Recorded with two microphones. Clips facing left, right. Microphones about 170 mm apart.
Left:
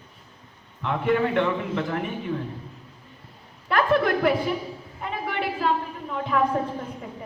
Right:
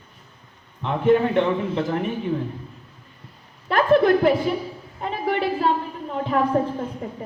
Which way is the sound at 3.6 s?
25° right (ahead or behind).